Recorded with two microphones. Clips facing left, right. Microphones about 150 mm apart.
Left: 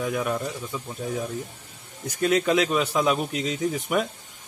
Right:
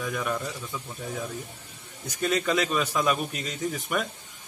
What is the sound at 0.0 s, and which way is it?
Speech, 20° left (ahead or behind).